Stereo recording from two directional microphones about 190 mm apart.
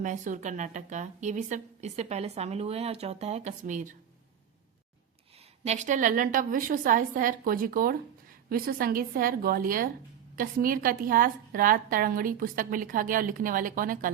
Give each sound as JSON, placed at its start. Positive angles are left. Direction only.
{"t": 0.0, "sound": "a woman's voice", "side_deg": -40}
{"t": 5.6, "sound": "a woman's voice", "side_deg": -40}